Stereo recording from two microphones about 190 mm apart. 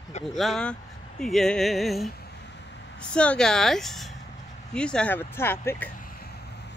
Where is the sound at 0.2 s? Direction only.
Centre (ahead or behind).